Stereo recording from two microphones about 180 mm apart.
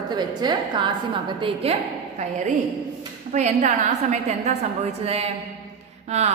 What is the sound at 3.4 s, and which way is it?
A woman's voice, 40° right (ahead or behind).